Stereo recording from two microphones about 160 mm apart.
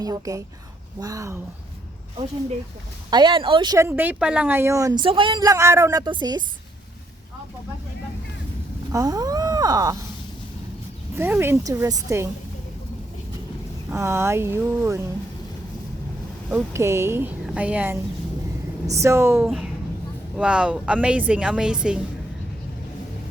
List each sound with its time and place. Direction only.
0.0 s speech: 20° right (ahead or behind)
3.1 s speech: 25° right (ahead or behind)
8.9 s speech: 20° right (ahead or behind)
11.2 s a woman's voice: 15° right (ahead or behind)
13.9 s a woman's voice: 15° right (ahead or behind)
16.5 s a woman's voice: 15° right (ahead or behind)